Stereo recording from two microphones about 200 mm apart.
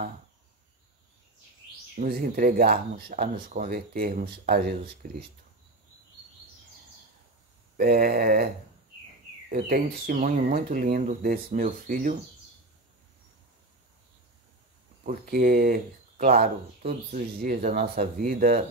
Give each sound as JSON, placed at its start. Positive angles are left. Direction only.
{"t": 2.0, "sound": "speech", "side_deg": -45}
{"t": 7.7, "sound": "speech", "side_deg": -50}
{"t": 9.5, "sound": "speech", "side_deg": -45}
{"t": 15.0, "sound": "speech", "side_deg": -45}